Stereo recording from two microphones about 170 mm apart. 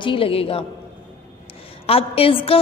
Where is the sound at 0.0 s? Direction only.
30° left (ahead or behind).